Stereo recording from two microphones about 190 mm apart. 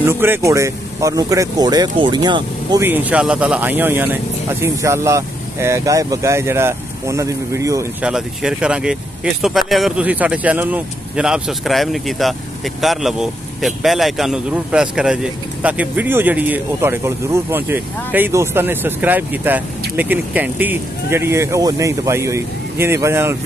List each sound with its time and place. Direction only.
0.0 s speech: 10° right (ahead or behind)
2.8 s speech: 10° right (ahead or behind)
8.0 s speech: centre (ahead or behind)